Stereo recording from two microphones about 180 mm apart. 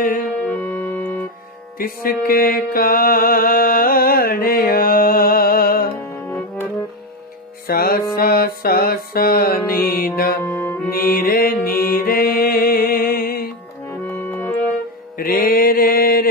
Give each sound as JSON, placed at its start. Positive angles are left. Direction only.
{"t": 0.0, "sound": "music", "side_deg": 50}
{"t": 0.4, "sound": "music", "side_deg": 10}
{"t": 1.8, "sound": "music", "side_deg": 55}
{"t": 6.2, "sound": "music", "side_deg": 5}
{"t": 7.6, "sound": "music", "side_deg": 55}
{"t": 10.4, "sound": "music", "side_deg": 15}
{"t": 11.1, "sound": "mantra", "side_deg": 55}
{"t": 15.1, "sound": "mantra", "side_deg": 55}